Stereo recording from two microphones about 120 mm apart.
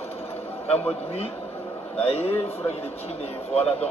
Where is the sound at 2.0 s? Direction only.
55° left (ahead or behind).